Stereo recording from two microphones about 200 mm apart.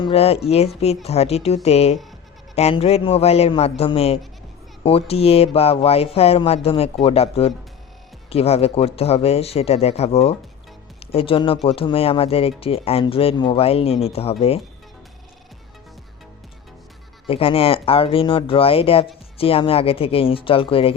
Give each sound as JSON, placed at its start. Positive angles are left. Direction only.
{"t": 0.0, "sound": "speech", "side_deg": 30}
{"t": 17.2, "sound": "speech", "side_deg": 25}